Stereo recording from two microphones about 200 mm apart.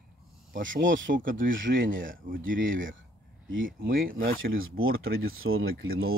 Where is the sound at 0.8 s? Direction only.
65° right (ahead or behind).